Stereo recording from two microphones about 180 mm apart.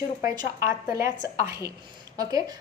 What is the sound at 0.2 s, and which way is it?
Speech, 15° right (ahead or behind).